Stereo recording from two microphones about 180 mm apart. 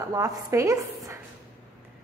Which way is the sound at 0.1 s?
20° right (ahead or behind).